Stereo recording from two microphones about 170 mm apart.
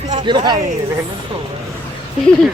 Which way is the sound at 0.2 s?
25° right (ahead or behind).